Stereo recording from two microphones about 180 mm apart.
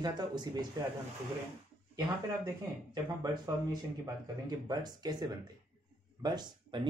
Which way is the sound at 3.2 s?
20° right (ahead or behind).